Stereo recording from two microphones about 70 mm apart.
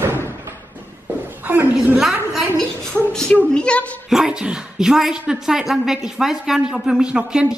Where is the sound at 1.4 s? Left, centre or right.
Right.